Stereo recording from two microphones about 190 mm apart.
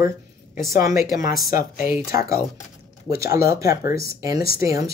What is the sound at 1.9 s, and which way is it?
Speech, 15° right (ahead or behind).